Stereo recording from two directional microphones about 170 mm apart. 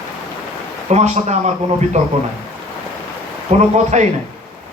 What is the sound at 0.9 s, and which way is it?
Speech, 40° right (ahead or behind).